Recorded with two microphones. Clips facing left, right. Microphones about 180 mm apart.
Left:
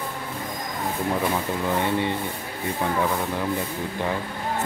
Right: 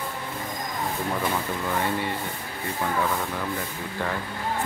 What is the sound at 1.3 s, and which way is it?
Speech, 20° left (ahead or behind).